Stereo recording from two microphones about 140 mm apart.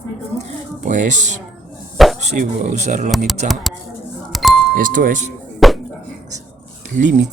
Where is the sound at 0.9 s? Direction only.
60° right (ahead or behind).